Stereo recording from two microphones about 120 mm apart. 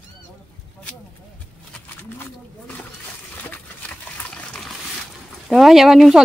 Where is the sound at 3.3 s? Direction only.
15° left (ahead or behind).